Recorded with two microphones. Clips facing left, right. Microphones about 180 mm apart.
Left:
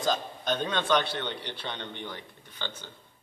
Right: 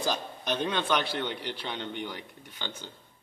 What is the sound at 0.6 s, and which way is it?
Speech, 10° right (ahead or behind).